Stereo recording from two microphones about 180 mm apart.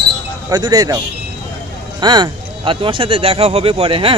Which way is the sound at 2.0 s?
25° right (ahead or behind).